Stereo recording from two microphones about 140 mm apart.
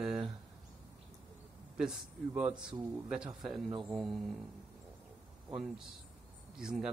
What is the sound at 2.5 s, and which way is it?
Speech, 5° right (ahead or behind).